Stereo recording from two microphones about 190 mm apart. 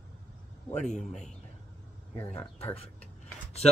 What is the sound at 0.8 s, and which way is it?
Speech, 40° left (ahead or behind).